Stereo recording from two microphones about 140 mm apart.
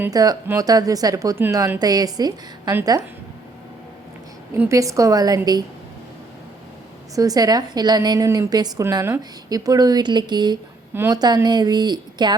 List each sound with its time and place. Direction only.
0.1 s a woman's voice: 25° right (ahead or behind)
4.7 s a woman's voice: 20° right (ahead or behind)
7.2 s a woman's voice: 25° right (ahead or behind)
10.9 s a woman's voice: 15° right (ahead or behind)
11.4 s speech: 30° right (ahead or behind)